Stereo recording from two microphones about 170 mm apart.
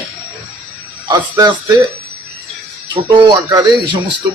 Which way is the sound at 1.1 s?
25° right (ahead or behind).